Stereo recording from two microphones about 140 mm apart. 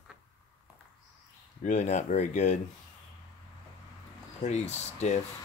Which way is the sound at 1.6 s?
60° left (ahead or behind).